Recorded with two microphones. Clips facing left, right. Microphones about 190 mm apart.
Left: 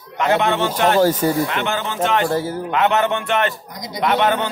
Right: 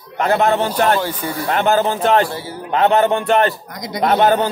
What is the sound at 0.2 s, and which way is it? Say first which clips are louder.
Speech: right 2 dB; 40° right (ahead or behind).